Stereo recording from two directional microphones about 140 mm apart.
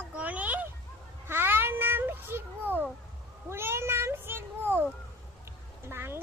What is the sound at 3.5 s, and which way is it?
Cat, 15° right (ahead or behind).